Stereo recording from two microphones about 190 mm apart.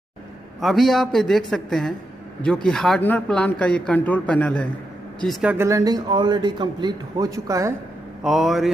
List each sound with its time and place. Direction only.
0.6 s a man's voice: centre (ahead or behind); by 7.7 s 15° right (ahead or behind)
8.2 s a man's voice: centre (ahead or behind)